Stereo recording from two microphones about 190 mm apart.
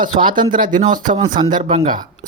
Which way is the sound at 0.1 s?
35° right (ahead or behind).